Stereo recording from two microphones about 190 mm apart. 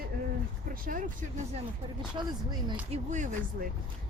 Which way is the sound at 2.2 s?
25° right (ahead or behind).